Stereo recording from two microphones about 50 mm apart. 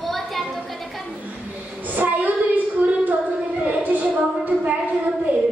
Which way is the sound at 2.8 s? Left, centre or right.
Right.